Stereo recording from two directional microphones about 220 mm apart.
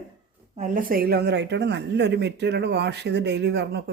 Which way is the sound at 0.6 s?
40° right (ahead or behind).